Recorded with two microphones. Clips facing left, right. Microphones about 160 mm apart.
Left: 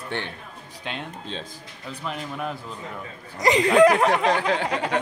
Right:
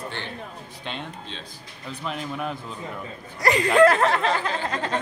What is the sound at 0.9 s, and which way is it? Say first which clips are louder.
Speech: left 1 dB; 5° left (ahead or behind).